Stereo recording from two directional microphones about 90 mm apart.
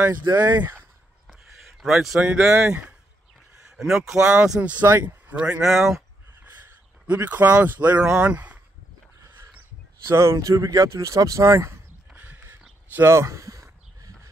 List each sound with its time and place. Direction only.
0.2 s speech: 50° right (ahead or behind)
1.6 s speech: 5° right (ahead or behind)
3.7 s speech: centre (ahead or behind)
4.4 s speech: 15° right (ahead or behind)
5.7 s speech: 5° right (ahead or behind)
7.1 s speech: 20° right (ahead or behind)
10.0 s speech: 30° right (ahead or behind)
12.1 s horse: 20° right (ahead or behind)
12.9 s a sound: 30° right (ahead or behind)